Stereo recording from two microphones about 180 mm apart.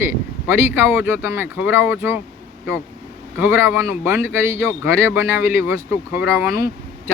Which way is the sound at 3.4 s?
15° right (ahead or behind).